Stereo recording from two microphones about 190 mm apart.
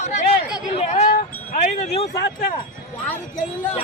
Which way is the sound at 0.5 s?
35° left (ahead or behind).